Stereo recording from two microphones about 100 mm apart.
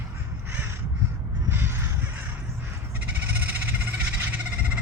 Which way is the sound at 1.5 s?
20° right (ahead or behind).